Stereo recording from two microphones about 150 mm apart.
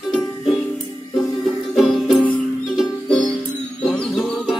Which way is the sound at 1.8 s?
Centre (ahead or behind).